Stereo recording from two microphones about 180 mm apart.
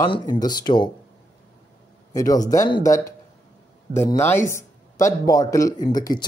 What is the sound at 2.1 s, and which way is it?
Speech, 20° left (ahead or behind).